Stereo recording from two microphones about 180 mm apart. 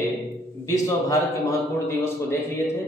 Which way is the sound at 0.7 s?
15° left (ahead or behind).